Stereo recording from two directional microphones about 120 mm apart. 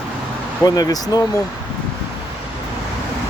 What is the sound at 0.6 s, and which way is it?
Speech, 35° left (ahead or behind).